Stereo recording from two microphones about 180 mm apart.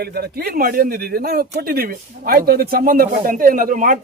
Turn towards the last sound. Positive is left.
turn(degrees=-50)  # may be behind; listen again after turning